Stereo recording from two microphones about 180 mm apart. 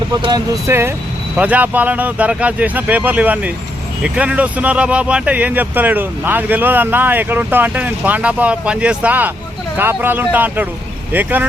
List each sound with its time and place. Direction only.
0.2 s speech: 25° right (ahead or behind)